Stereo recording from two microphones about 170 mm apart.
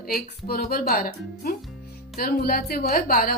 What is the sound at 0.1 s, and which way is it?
A woman's voice, 60° left (ahead or behind).